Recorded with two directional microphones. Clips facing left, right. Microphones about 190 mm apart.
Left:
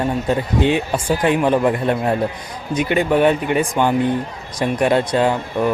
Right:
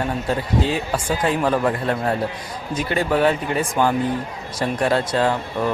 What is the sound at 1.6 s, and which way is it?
Speech, 20° left (ahead or behind).